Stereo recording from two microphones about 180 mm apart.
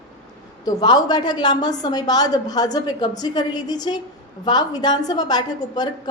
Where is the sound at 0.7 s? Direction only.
20° left (ahead or behind).